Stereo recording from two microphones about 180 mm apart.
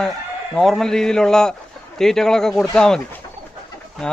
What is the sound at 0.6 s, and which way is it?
A man's voice, centre (ahead or behind).